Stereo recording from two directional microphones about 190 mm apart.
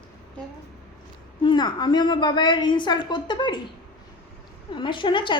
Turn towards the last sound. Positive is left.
turn(degrees=25)  # may be behind; listen again after turning